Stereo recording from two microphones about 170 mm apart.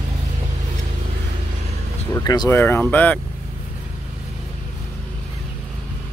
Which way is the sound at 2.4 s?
10° left (ahead or behind).